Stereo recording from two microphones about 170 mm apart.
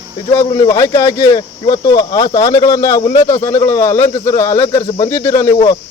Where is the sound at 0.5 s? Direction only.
20° left (ahead or behind).